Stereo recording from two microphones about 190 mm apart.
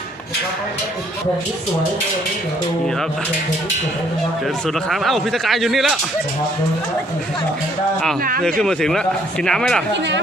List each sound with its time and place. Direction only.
4.6 s a man's voice: centre (ahead or behind)
8.2 s speech: 50° right (ahead or behind)
8.4 s a man's voice: 5° left (ahead or behind)